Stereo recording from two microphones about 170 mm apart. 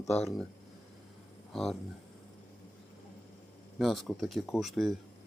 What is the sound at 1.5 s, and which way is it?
Speech, centre (ahead or behind).